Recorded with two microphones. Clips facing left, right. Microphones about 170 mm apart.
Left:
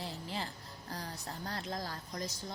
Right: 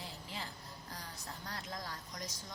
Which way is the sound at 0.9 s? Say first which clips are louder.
Left 8 dB; 30° left (ahead or behind).